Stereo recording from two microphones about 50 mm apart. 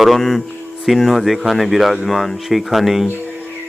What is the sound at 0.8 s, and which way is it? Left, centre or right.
Speech, centre.